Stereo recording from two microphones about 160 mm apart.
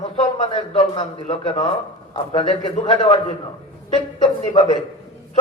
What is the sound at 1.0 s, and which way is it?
A man's voice, 35° left (ahead or behind).